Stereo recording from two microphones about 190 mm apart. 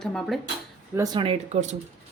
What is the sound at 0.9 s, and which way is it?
Speech, 20° right (ahead or behind).